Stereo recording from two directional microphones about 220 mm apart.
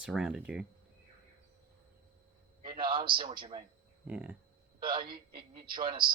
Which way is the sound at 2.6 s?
20° right (ahead or behind).